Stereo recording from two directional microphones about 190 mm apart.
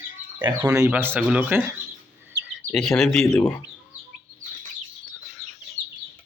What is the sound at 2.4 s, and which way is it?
Chirp, 60° right (ahead or behind).